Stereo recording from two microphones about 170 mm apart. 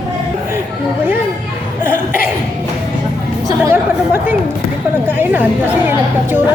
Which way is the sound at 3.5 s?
15° right (ahead or behind).